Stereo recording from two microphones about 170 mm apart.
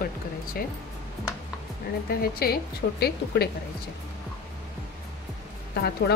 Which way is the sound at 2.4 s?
65° left (ahead or behind).